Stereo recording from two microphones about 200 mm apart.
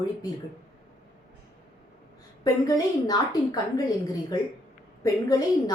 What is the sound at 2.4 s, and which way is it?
A woman's voice, 20° left (ahead or behind).